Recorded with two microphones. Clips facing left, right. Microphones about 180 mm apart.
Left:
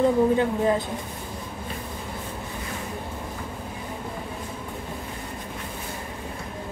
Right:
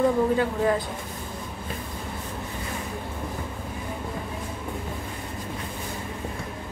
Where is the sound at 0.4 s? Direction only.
20° left (ahead or behind).